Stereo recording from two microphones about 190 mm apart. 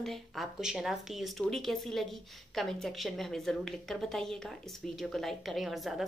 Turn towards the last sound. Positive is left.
turn(degrees=0)  # may be behind; listen again after turning